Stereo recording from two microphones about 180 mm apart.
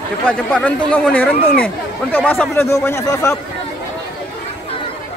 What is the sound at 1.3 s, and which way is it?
Speech, 55° left (ahead or behind).